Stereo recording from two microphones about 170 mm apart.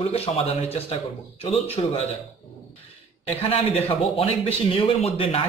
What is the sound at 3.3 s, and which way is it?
A man's voice, 35° left (ahead or behind).